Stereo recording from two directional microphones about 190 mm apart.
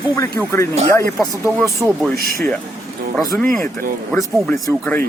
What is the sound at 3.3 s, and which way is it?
Speech, 5° left (ahead or behind).